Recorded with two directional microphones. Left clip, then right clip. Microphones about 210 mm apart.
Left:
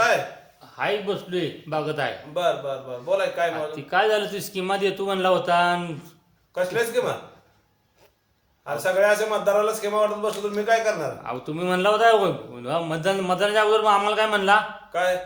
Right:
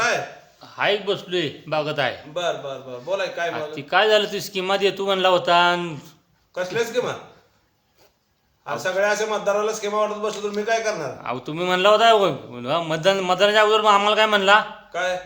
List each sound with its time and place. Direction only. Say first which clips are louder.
0.6 s speech: right 4 dB; 35° right (ahead or behind)
2.3 s a man's voice: left 2 dB; centre (ahead or behind)
3.5 s speech: right 2 dB; 35° right (ahead or behind)
6.5 s a man's voice: even; centre (ahead or behind)
8.6 s a man's voice: left 1 dB; centre (ahead or behind)
11.2 s speech: right 2 dB; 35° right (ahead or behind)
14.9 s a man's voice: left 1 dB; centre (ahead or behind)